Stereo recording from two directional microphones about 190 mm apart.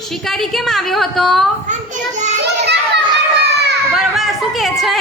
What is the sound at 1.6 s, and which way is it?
Children playing, 40° right (ahead or behind).